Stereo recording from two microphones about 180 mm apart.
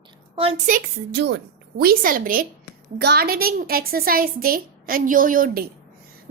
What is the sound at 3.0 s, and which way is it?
A woman's voice, 65° right (ahead or behind).